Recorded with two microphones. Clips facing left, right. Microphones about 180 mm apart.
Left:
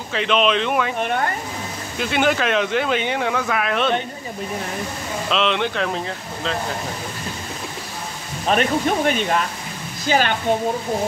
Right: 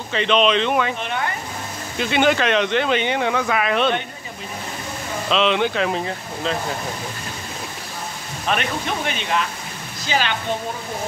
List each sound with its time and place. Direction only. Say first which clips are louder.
0.1 s speech: right 1 dB; 5° left (ahead or behind)
1.0 s speech: left 3 dB; 45° left (ahead or behind)
2.0 s speech: right 2 dB; centre (ahead or behind)
5.3 s speech: right 2 dB; centre (ahead or behind)
8.5 s speech: left 5 dB; 40° left (ahead or behind)